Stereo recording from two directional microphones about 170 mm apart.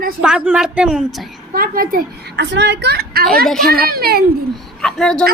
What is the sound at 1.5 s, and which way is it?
A woman's voice, 60° right (ahead or behind).